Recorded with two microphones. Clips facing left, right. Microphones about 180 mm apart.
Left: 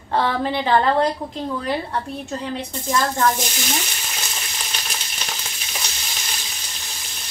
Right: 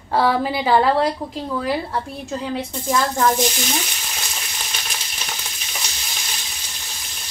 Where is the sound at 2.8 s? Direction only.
5° right (ahead or behind).